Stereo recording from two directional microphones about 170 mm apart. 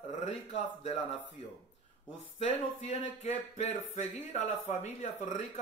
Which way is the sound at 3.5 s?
40° left (ahead or behind).